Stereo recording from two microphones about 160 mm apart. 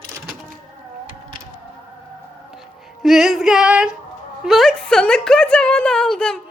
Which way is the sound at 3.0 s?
Centre (ahead or behind).